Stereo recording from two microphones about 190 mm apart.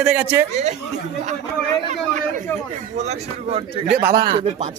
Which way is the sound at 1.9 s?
40° right (ahead or behind).